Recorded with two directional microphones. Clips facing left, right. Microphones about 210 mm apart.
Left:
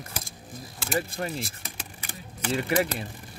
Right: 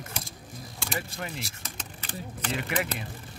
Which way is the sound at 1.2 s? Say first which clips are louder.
Left 5 dB; 35° left (ahead or behind).